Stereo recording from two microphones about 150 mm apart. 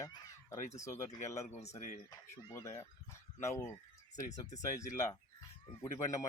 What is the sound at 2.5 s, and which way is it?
Speech, 20° left (ahead or behind).